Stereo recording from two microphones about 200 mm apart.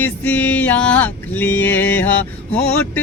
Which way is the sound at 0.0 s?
10° left (ahead or behind).